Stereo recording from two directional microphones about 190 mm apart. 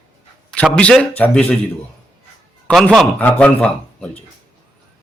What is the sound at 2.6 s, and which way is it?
Speech, 5° left (ahead or behind).